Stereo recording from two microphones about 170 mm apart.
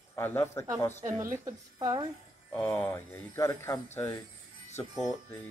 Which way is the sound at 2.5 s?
10° left (ahead or behind).